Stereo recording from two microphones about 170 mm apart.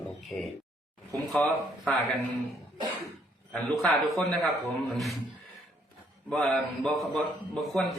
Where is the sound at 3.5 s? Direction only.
5° left (ahead or behind).